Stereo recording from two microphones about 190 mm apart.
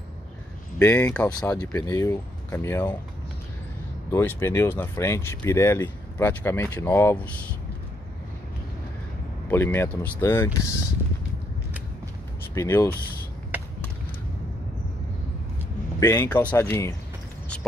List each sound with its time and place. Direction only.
0.7 s speech: 10° left (ahead or behind)
4.1 s speech: 10° left (ahead or behind)
9.5 s speech: 10° left (ahead or behind)
12.5 s speech: 15° left (ahead or behind)
16.0 s speech: 10° left (ahead or behind)